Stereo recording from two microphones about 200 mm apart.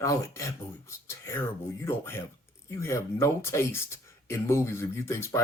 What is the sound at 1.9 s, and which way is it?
Speech, 10° left (ahead or behind).